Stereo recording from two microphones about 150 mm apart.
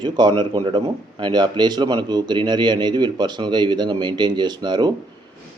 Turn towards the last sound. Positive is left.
turn(degrees=-30)  # may be behind; listen again after turning